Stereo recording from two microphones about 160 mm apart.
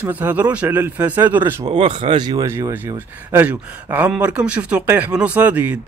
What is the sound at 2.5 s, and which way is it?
A man's voice, 15° right (ahead or behind).